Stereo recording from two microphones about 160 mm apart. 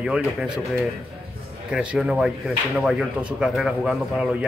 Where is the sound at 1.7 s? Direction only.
5° right (ahead or behind).